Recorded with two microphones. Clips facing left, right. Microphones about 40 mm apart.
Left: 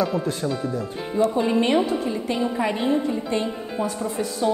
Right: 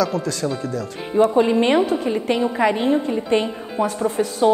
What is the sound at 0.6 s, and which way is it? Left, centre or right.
Speech, right.